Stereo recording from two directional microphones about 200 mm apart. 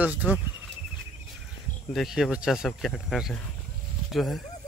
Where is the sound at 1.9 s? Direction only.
Centre (ahead or behind).